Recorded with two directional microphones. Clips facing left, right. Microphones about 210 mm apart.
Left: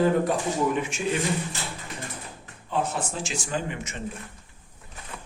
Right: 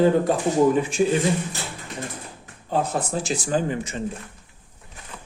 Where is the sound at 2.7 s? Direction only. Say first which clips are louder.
Right 4 dB; 40° right (ahead or behind).